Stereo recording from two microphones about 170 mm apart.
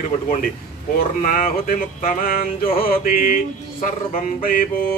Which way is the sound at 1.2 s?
55° left (ahead or behind).